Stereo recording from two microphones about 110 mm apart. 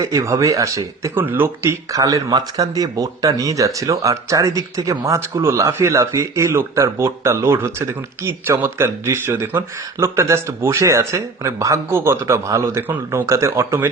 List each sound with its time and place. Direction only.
0.0 s speech: 30° right (ahead or behind)